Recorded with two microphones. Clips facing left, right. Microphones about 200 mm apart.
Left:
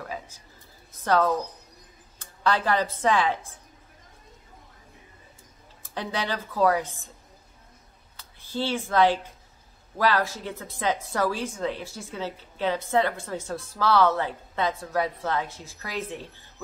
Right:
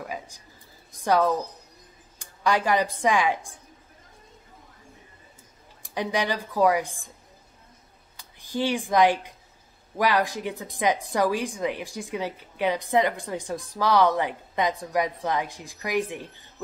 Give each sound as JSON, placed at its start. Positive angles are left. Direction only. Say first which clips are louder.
{"t": 0.0, "sound": "a sound", "louder": "right 1 dB", "side_deg": -15}
{"t": 0.9, "sound": "a woman's voice", "louder": "right 1 dB", "side_deg": -15}
{"t": 5.8, "sound": "a woman's voice", "louder": "right 4 dB", "side_deg": -15}
{"t": 8.2, "sound": "a woman's voice", "louder": "right 3 dB", "side_deg": -15}